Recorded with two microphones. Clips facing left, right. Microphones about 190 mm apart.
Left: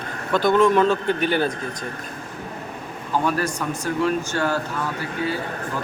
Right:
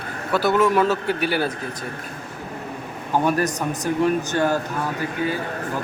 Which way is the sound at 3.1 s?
15° right (ahead or behind).